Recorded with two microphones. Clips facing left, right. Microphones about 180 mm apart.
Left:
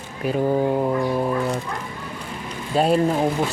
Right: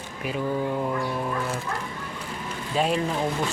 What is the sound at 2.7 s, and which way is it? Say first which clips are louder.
Speech: left 6 dB; 40° left (ahead or behind).